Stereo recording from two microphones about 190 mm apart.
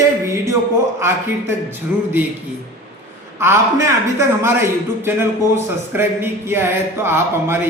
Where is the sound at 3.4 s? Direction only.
15° right (ahead or behind).